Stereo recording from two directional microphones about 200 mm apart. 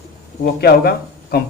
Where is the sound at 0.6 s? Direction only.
50° left (ahead or behind).